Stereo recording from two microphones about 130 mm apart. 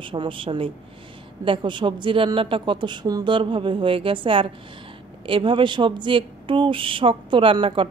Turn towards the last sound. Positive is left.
turn(degrees=-45)  # may be behind; listen again after turning